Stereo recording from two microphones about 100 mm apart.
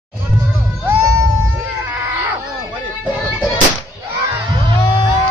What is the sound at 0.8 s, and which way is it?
Screaming, 20° right (ahead or behind).